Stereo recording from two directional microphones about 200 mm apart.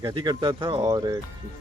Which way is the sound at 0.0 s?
20° right (ahead or behind).